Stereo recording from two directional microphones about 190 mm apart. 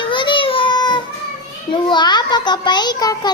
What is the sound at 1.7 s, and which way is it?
A child's voice, 25° left (ahead or behind).